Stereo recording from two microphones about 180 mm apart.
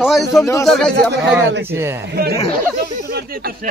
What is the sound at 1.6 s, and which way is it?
Speech, 15° right (ahead or behind).